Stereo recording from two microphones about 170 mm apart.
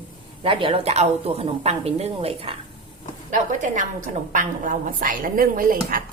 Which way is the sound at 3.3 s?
50° right (ahead or behind).